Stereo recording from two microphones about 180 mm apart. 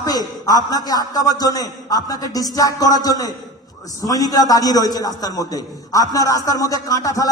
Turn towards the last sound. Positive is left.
turn(degrees=20)  # may be behind; listen again after turning